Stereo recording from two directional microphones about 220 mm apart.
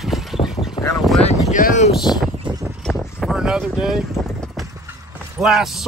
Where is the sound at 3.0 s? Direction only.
Centre (ahead or behind).